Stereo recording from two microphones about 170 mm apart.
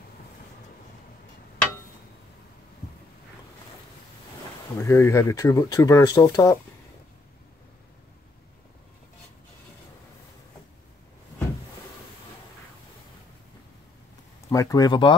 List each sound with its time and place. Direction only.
4.7 s speech: 15° left (ahead or behind)
14.5 s speech: 20° left (ahead or behind)